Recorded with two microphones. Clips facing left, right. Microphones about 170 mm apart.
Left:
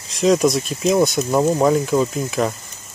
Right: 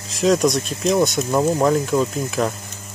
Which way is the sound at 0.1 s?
Centre (ahead or behind).